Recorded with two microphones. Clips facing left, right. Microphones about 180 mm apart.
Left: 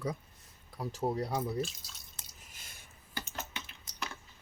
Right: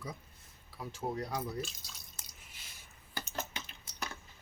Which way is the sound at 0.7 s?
40° left (ahead or behind).